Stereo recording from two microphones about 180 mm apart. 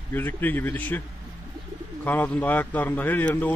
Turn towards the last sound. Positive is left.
turn(degrees=10)  # may be behind; listen again after turning